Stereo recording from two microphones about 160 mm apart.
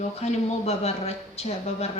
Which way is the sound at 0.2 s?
40° left (ahead or behind).